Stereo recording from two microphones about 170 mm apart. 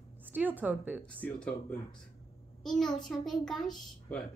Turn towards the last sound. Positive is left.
turn(degrees=0)  # may be behind; listen again after turning